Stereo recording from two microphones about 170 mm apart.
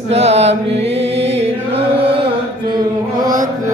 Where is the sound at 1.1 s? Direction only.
35° right (ahead or behind).